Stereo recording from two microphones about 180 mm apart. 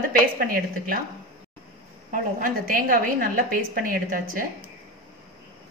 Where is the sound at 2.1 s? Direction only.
55° right (ahead or behind).